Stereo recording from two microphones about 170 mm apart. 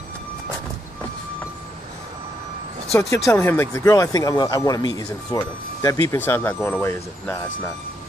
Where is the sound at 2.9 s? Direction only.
15° left (ahead or behind).